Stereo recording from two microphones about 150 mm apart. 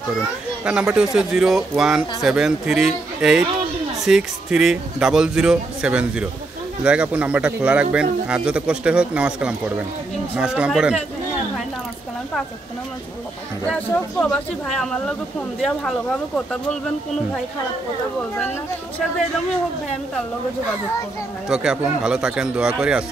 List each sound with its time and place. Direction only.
0.7 s a man's voice: 5° right (ahead or behind)
13.7 s speech: 10° left (ahead or behind)
21.5 s speech: 5° right (ahead or behind)